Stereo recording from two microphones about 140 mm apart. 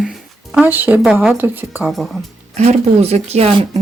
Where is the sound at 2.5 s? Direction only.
50° right (ahead or behind).